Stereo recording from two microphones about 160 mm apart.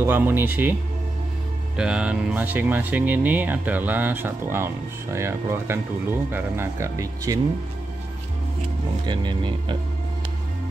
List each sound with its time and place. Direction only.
0.0 s speech: 15° right (ahead or behind)
1.8 s speech: 5° right (ahead or behind)
9.0 s speech: 30° right (ahead or behind)